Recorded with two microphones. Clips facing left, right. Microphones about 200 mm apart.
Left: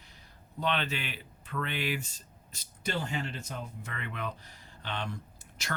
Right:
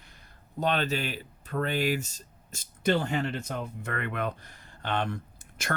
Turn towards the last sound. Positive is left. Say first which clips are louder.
# right 5 dB
turn(degrees=-55)  # may be behind; listen again after turning